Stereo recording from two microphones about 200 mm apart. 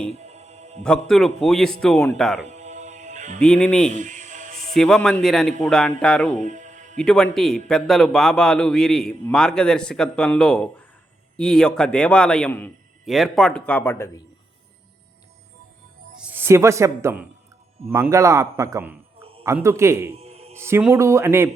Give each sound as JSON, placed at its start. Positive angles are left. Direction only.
{"t": 0.1, "sound": "music", "side_deg": -30}
{"t": 0.8, "sound": "a man's voice", "side_deg": 5}
{"t": 2.5, "sound": "music", "side_deg": -35}
{"t": 3.4, "sound": "a man's voice", "side_deg": 5}
{"t": 3.9, "sound": "music", "side_deg": -40}
{"t": 4.7, "sound": "a man's voice", "side_deg": 0}
{"t": 6.4, "sound": "music", "side_deg": -40}
{"t": 6.9, "sound": "a man's voice", "side_deg": 5}
{"t": 16.1, "sound": "a woman's voice", "side_deg": -10}
{"t": 19.2, "sound": "a sound", "side_deg": -30}
{"t": 19.5, "sound": "a man's voice", "side_deg": -15}
{"t": 20.1, "sound": "music", "side_deg": -30}
{"t": 20.6, "sound": "a man's voice", "side_deg": -10}